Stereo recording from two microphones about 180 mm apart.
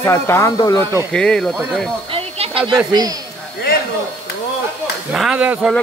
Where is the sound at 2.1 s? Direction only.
30° right (ahead or behind).